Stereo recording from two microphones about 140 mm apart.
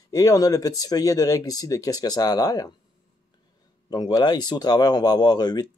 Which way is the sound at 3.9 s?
30° left (ahead or behind).